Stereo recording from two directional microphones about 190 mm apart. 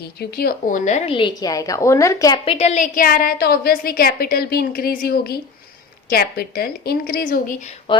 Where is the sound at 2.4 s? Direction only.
35° left (ahead or behind).